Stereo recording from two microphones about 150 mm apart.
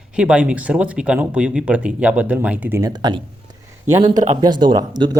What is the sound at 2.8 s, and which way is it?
Speech, 25° right (ahead or behind).